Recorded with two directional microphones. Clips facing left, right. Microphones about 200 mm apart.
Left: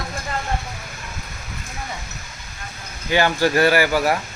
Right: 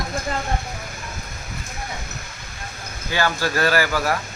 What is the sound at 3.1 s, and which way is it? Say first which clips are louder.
Speech: left 5 dB; 15° left (ahead or behind).